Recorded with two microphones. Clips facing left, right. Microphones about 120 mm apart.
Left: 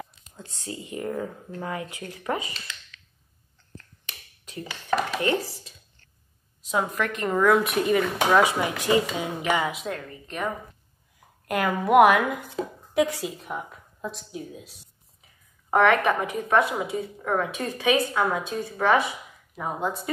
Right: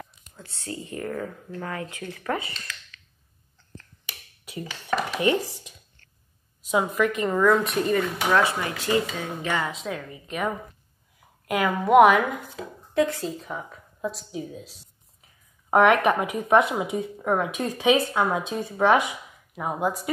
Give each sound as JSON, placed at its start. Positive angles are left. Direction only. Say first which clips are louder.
{"t": 0.4, "sound": "speech", "louder": "right 1 dB", "side_deg": 20}
{"t": 4.0, "sound": "a sound", "louder": "right 1 dB", "side_deg": -10}
{"t": 5.2, "sound": "speech", "louder": "right 2 dB", "side_deg": -15}
{"t": 7.0, "sound": "speech", "louder": "right 2 dB", "side_deg": -5}
{"t": 9.8, "sound": "speech", "louder": "right 1 dB", "side_deg": -5}
{"t": 12.9, "sound": "speech", "louder": "right 1 dB", "side_deg": 15}
{"t": 15.7, "sound": "speech", "louder": "right 2 dB", "side_deg": -15}